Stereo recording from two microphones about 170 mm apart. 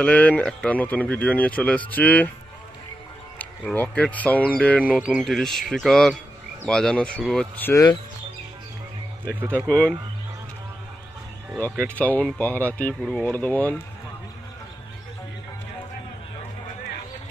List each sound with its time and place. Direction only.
0.0 s speech: 10° left (ahead or behind)
3.3 s speech: 10° left (ahead or behind)
7.7 s speech: 20° left (ahead or behind)
9.7 s speech: 10° left (ahead or behind)
11.9 s speech: 10° left (ahead or behind)